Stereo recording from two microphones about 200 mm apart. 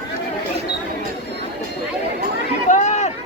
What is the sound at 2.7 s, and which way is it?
Sheep, 35° left (ahead or behind).